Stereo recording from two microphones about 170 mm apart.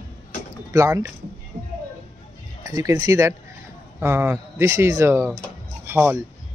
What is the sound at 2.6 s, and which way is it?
Speech, 20° right (ahead or behind).